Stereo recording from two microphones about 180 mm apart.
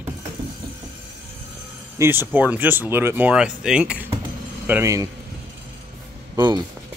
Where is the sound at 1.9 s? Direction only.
15° right (ahead or behind).